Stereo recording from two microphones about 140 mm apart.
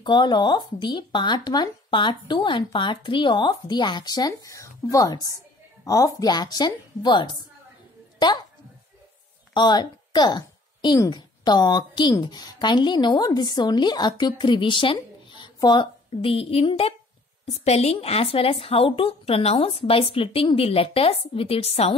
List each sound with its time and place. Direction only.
0.0 s a woman's voice: 35° left (ahead or behind)
9.5 s a woman's voice: 30° left (ahead or behind)